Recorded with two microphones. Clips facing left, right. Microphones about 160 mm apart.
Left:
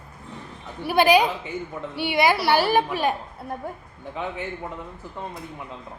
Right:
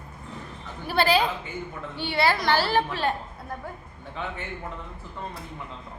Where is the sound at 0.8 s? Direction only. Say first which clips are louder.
Left 5 dB; 15° left (ahead or behind).